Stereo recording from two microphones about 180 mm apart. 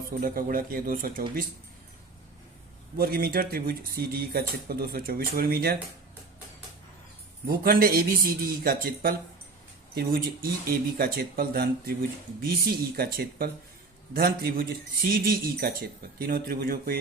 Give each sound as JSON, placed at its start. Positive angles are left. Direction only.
{"t": 0.2, "sound": "speech", "side_deg": -50}
{"t": 3.0, "sound": "speech", "side_deg": -55}
{"t": 7.4, "sound": "speech", "side_deg": -55}